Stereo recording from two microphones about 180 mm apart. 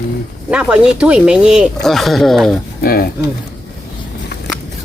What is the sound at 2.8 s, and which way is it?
Speech, 55° left (ahead or behind).